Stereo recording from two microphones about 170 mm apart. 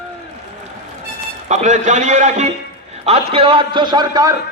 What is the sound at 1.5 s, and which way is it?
A man's voice, 45° right (ahead or behind).